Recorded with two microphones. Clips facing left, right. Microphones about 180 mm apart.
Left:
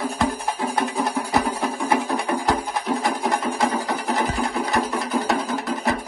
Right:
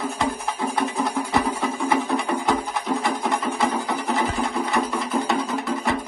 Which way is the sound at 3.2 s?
Centre (ahead or behind).